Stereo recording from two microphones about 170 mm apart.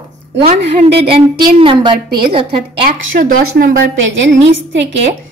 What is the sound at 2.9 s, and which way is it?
Speech, 55° right (ahead or behind).